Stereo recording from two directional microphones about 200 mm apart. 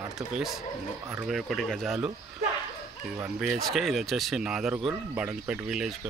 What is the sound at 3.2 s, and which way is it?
Speech, centre (ahead or behind).